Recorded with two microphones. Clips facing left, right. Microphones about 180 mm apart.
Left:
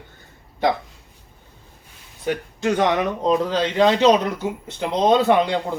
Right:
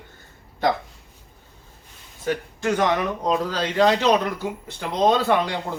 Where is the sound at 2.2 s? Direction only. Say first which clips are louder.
Left 2 dB; 20° left (ahead or behind).